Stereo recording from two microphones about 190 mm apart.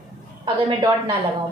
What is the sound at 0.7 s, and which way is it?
Speech, 25° right (ahead or behind).